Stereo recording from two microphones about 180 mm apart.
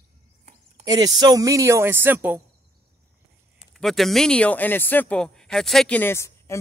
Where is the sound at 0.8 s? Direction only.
20° right (ahead or behind).